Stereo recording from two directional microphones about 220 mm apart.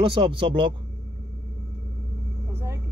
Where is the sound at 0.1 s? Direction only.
20° right (ahead or behind).